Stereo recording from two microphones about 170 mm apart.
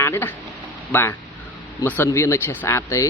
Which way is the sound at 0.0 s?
15° left (ahead or behind).